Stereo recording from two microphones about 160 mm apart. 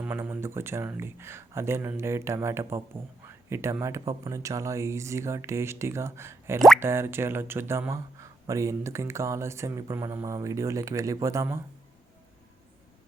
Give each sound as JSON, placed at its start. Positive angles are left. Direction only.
{"t": 0.0, "sound": "speech", "side_deg": -10}